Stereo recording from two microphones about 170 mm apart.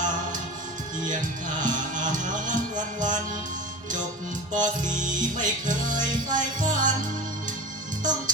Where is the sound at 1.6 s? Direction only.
50° right (ahead or behind).